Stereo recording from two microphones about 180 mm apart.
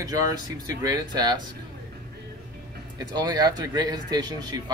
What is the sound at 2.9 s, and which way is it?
Speech, 20° right (ahead or behind).